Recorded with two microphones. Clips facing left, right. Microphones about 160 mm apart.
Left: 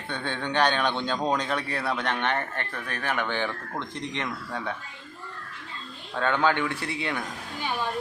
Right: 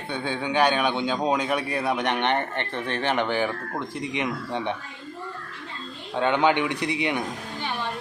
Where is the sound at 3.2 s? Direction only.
10° right (ahead or behind).